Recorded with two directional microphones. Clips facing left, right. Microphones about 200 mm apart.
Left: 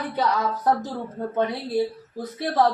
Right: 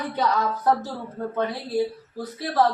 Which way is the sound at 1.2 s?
20° left (ahead or behind).